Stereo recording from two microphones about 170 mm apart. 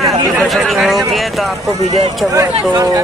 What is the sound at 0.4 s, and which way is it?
Speech, centre (ahead or behind).